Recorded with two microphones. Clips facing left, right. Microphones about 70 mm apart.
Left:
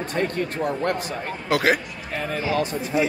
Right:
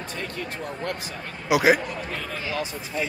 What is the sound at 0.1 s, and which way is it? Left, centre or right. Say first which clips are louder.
Speech: left 9 dB; left.